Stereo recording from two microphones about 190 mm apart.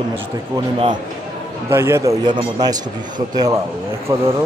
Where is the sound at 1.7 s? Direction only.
15° right (ahead or behind).